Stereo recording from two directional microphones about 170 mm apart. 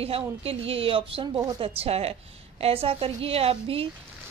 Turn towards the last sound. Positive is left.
turn(degrees=-35)  # may be behind; listen again after turning